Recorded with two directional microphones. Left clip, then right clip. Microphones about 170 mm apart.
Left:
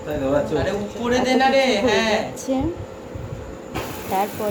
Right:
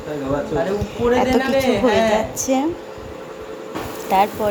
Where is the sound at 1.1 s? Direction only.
45° right (ahead or behind).